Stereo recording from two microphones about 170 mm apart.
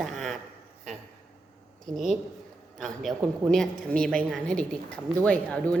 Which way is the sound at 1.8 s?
Centre (ahead or behind).